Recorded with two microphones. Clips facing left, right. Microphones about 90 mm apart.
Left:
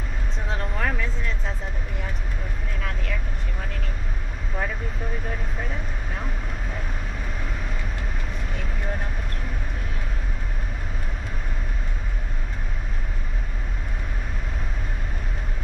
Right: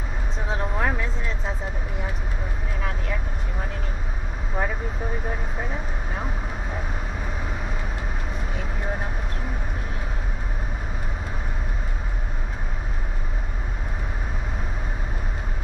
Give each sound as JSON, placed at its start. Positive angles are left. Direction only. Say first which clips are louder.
{"t": 0.5, "sound": "a sound", "louder": "right 2 dB", "side_deg": -10}
{"t": 1.0, "sound": "music", "louder": "right 1 dB", "side_deg": -5}
{"t": 4.6, "sound": "vehicle", "louder": "right 2 dB", "side_deg": -5}
{"t": 8.5, "sound": "vehicle", "louder": "right 2 dB", "side_deg": -5}